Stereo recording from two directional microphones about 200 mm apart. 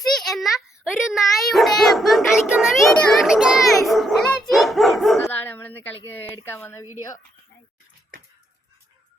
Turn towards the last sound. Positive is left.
turn(degrees=15)  # may be behind; listen again after turning